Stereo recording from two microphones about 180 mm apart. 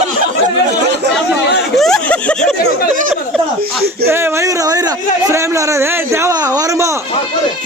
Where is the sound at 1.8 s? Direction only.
5° left (ahead or behind).